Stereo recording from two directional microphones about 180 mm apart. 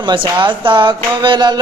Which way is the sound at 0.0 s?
25° right (ahead or behind).